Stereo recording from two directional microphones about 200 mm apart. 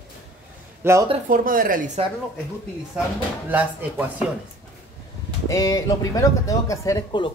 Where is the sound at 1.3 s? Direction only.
45° right (ahead or behind).